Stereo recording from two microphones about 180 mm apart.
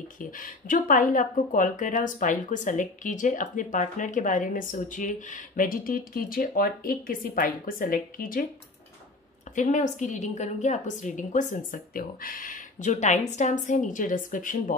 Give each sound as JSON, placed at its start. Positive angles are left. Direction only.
{"t": 0.2, "sound": "speech", "side_deg": 50}
{"t": 9.6, "sound": "speech", "side_deg": 45}